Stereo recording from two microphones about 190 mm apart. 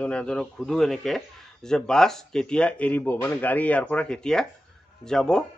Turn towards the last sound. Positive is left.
turn(degrees=5)  # may be behind; listen again after turning